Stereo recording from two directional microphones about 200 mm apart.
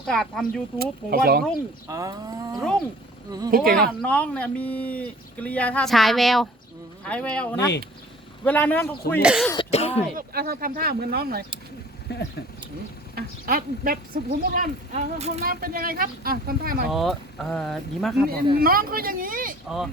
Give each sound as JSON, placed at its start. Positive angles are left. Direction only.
{"t": 0.1, "sound": "speech", "side_deg": 0}
{"t": 0.8, "sound": "speech", "side_deg": -50}
{"t": 1.9, "sound": "cattle", "side_deg": -15}
{"t": 3.5, "sound": "speech", "side_deg": -45}
{"t": 4.0, "sound": "speech", "side_deg": 5}
{"t": 9.2, "sound": "speech", "side_deg": -5}
{"t": 9.7, "sound": "speech", "side_deg": 30}
{"t": 10.2, "sound": "speech", "side_deg": -50}
{"t": 12.1, "sound": "speech", "side_deg": 55}
{"t": 13.1, "sound": "speech", "side_deg": -45}
{"t": 16.9, "sound": "speech", "side_deg": 0}
{"t": 18.6, "sound": "speech", "side_deg": -45}